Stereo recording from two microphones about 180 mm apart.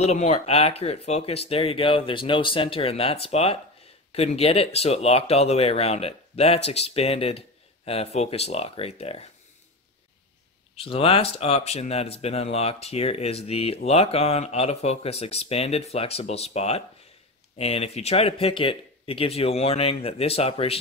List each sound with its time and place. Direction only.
0.0 s speech: 35° left (ahead or behind)
10.8 s speech: 30° left (ahead or behind)